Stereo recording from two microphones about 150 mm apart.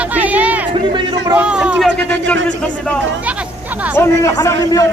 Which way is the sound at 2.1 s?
5° left (ahead or behind).